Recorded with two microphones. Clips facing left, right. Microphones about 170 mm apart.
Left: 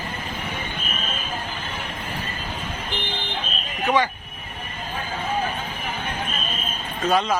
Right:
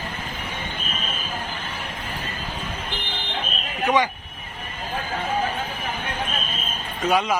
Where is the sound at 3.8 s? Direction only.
15° right (ahead or behind).